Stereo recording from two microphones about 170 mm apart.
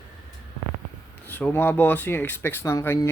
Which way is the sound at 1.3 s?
10° left (ahead or behind).